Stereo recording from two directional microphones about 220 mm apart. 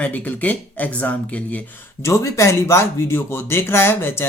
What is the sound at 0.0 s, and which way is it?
Speech, 5° left (ahead or behind).